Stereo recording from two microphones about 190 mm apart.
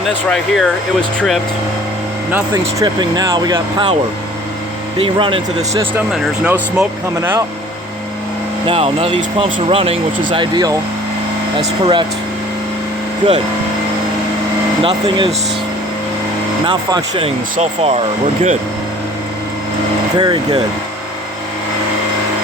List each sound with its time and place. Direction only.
0.3 s speech: centre (ahead or behind)
2.3 s speech: 20° right (ahead or behind)
4.9 s speech: 25° right (ahead or behind)
6.4 s speech: 10° right (ahead or behind)
8.6 s speech: 30° right (ahead or behind)
13.2 s speech: 25° right (ahead or behind)
14.8 s speech: 25° right (ahead or behind)
16.6 s speech: 25° right (ahead or behind)
20.1 s speech: 20° right (ahead or behind)